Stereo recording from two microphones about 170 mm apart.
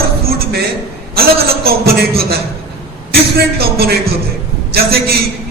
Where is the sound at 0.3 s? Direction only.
65° right (ahead or behind).